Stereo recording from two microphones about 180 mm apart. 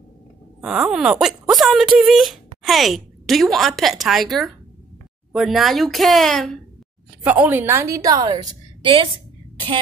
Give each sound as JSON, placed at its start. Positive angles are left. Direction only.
{"t": 0.6, "sound": "a woman's voice", "side_deg": -5}
{"t": 7.2, "sound": "a woman's voice", "side_deg": -10}